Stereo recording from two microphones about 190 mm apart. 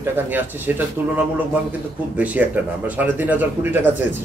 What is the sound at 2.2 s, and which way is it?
Speech, 5° right (ahead or behind).